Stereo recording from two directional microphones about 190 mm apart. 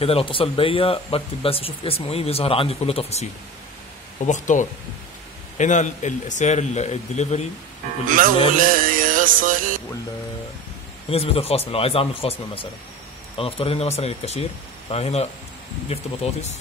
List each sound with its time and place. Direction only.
0.0 s speech: 30° left (ahead or behind)
4.3 s a man's voice: 40° left (ahead or behind)
8.1 s speech: 45° right (ahead or behind)
8.5 s music: 45° right (ahead or behind)
11.1 s a man's voice: 30° left (ahead or behind)